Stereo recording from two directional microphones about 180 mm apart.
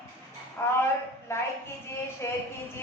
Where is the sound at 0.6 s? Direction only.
10° left (ahead or behind).